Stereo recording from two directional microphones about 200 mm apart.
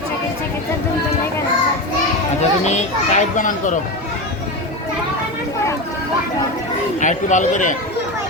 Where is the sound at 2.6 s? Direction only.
35° left (ahead or behind).